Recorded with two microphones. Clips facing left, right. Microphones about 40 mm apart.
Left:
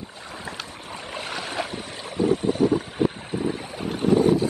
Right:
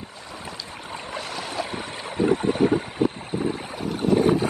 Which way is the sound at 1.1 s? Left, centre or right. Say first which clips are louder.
Left 1 dB; left.